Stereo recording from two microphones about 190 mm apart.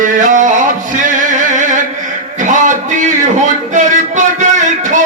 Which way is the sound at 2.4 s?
40° right (ahead or behind).